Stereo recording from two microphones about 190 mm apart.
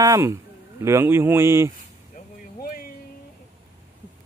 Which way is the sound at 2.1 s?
50° left (ahead or behind).